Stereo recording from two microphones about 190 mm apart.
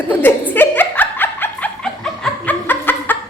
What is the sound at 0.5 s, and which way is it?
Laughter, 10° left (ahead or behind).